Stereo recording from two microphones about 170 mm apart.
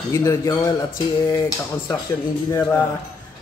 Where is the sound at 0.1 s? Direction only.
15° left (ahead or behind).